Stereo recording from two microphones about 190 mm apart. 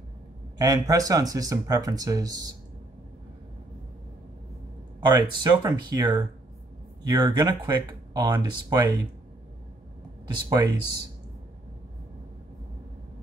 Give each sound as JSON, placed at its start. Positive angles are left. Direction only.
{"t": 0.6, "sound": "speech", "side_deg": -20}
{"t": 5.0, "sound": "speech", "side_deg": -25}
{"t": 10.2, "sound": "speech", "side_deg": -20}